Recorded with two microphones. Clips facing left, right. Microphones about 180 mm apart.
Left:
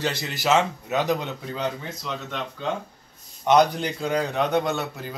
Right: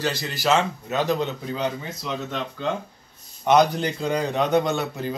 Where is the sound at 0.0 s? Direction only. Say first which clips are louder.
Right 1 dB; 25° left (ahead or behind).